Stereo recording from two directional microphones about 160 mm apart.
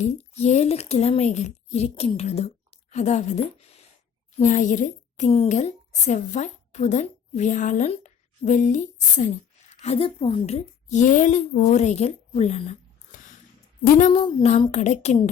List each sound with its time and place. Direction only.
0.0 s a woman's voice: 45° left (ahead or behind)
14.1 s a sound: 35° left (ahead or behind)
14.7 s speech: 45° left (ahead or behind)